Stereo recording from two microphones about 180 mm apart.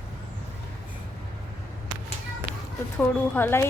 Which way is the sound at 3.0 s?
10° left (ahead or behind).